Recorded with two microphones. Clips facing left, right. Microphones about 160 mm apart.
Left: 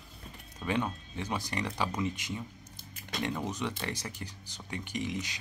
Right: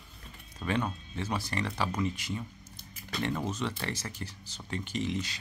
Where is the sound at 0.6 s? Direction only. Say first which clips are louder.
Right 1 dB; 5° left (ahead or behind).